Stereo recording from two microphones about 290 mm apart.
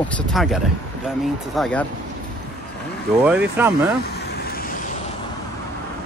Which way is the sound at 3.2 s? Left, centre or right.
Centre.